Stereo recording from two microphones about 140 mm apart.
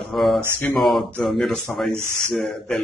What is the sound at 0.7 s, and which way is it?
A man's voice, centre (ahead or behind).